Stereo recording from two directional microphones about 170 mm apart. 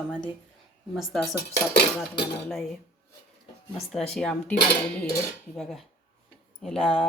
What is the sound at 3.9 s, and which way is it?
Speech, centre (ahead or behind).